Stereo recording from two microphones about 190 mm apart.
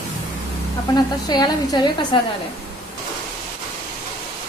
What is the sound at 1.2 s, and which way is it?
Speech, 20° left (ahead or behind).